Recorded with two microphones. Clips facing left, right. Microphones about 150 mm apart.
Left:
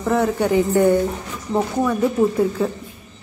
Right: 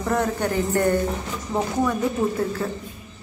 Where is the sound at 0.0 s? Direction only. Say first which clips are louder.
Left 4 dB; 10° left (ahead or behind).